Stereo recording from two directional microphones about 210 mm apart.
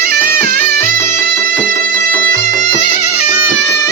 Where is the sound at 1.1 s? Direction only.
10° left (ahead or behind).